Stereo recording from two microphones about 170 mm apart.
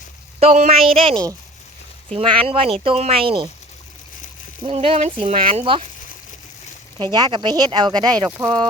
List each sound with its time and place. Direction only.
0.3 s speech: 40° right (ahead or behind)
4.6 s speech: 35° right (ahead or behind)
7.0 s speech: 25° right (ahead or behind)